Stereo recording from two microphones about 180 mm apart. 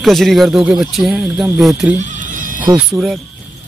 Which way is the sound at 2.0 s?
45° right (ahead or behind).